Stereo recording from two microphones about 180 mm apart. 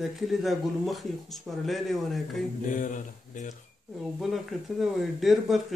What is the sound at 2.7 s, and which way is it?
Speech, 45° left (ahead or behind).